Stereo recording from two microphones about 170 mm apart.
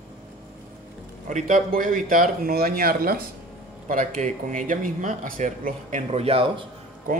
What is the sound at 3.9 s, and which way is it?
Speech, 50° right (ahead or behind).